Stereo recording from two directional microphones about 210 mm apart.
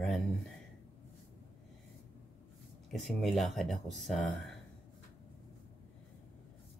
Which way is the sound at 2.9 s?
Centre (ahead or behind).